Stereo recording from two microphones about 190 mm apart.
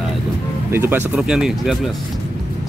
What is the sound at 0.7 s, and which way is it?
Speech, 10° right (ahead or behind).